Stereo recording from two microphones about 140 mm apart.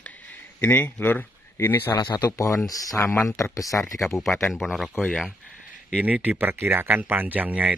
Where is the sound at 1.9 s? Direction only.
30° left (ahead or behind).